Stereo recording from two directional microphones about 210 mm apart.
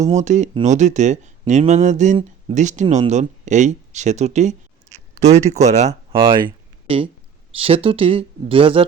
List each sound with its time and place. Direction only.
0.0 s speech: 35° right (ahead or behind)